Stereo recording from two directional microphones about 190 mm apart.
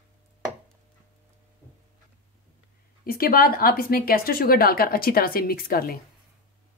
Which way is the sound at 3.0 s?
50° left (ahead or behind).